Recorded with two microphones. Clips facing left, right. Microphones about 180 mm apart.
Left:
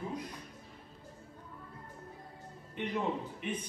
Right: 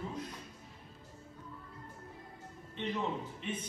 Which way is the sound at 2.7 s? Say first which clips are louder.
Left 2 dB; 10° left (ahead or behind).